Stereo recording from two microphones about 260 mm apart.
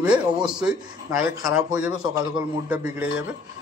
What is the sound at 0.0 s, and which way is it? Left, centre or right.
Speech, centre.